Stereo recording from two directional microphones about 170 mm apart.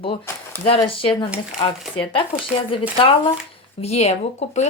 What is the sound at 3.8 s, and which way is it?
Speech, 40° left (ahead or behind).